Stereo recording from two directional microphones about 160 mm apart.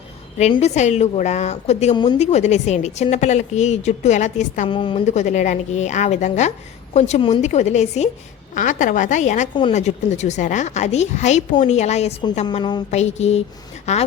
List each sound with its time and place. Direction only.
0.6 s a woman's voice: 45° left (ahead or behind)
4.7 s a woman's voice: 30° left (ahead or behind)
5.0 s a woman's voice: 50° left (ahead or behind)
7.2 s a woman's voice: 30° left (ahead or behind)
7.4 s a woman's voice: 45° left (ahead or behind)
12.5 s a woman's voice: 25° left (ahead or behind)
12.9 s a woman's voice: 45° left (ahead or behind)